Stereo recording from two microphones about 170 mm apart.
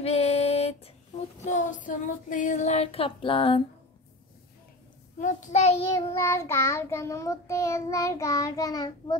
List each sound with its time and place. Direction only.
0.0 s female singing: 40° left (ahead or behind)
1.4 s child singing: 45° left (ahead or behind)
5.2 s a child's voice: 45° left (ahead or behind)
6.1 s child singing: 15° left (ahead or behind)